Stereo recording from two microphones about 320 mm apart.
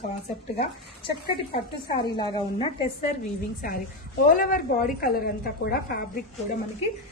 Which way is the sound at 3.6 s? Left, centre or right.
Left.